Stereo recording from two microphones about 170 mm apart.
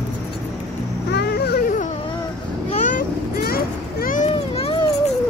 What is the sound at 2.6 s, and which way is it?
Vehicle, 45° left (ahead or behind).